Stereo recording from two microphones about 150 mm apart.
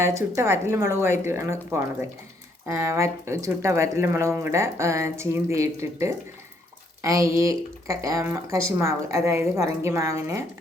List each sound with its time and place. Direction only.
0.0 s speech: 20° right (ahead or behind)